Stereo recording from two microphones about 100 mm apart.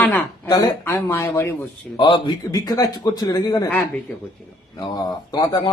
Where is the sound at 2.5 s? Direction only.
40° left (ahead or behind).